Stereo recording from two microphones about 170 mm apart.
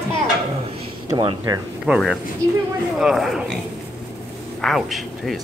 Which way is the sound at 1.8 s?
Centre (ahead or behind).